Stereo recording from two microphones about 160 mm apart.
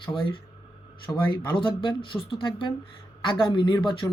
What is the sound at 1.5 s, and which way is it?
Speech, 30° left (ahead or behind).